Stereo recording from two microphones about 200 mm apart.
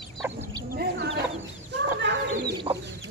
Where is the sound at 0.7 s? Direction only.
50° right (ahead or behind).